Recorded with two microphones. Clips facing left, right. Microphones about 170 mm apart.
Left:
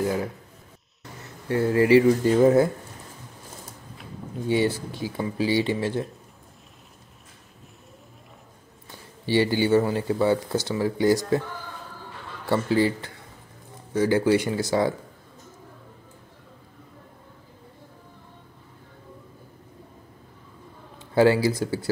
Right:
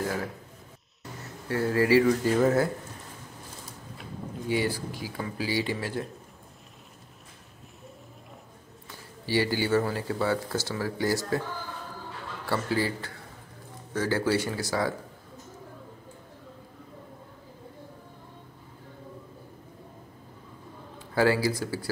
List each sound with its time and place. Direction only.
1.5 s speech: 20° left (ahead or behind)
4.5 s speech: 25° left (ahead or behind)
9.2 s speech: 25° left (ahead or behind)
12.4 s speech: 20° left (ahead or behind)
21.1 s speech: 25° left (ahead or behind)